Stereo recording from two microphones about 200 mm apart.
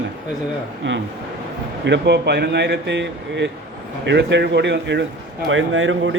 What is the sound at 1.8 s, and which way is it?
Speech, 60° right (ahead or behind).